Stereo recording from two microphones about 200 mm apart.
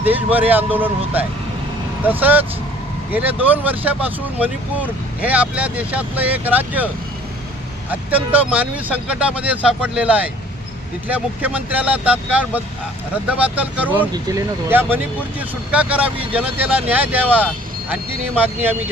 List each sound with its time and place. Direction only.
0.0 s speech: 10° right (ahead or behind)
14.1 s speech: 15° right (ahead or behind)